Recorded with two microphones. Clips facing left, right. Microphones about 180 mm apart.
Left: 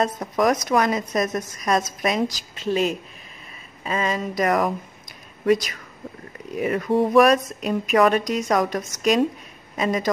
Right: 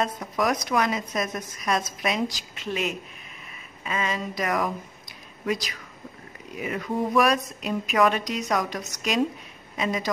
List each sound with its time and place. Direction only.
0.0 s a woman's voice: 40° left (ahead or behind)
7.2 s a woman's voice: 45° left (ahead or behind)